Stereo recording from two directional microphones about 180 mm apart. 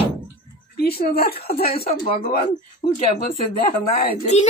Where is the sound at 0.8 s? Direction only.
60° left (ahead or behind).